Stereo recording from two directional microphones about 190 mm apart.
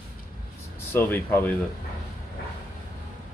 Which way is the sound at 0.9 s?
10° left (ahead or behind).